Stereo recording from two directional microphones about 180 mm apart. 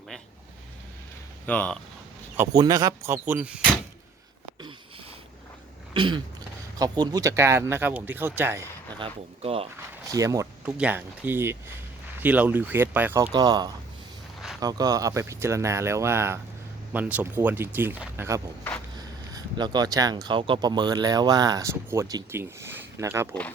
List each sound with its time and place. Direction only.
1.5 s speech: 5° left (ahead or behind)
2.3 s speech: 15° right (ahead or behind)
5.9 s throat clearing: 25° right (ahead or behind)
6.7 s speech: 20° right (ahead or behind)
9.0 s speech: 30° right (ahead or behind)
10.1 s speech: 15° right (ahead or behind)
13.3 s speech: 20° right (ahead or behind)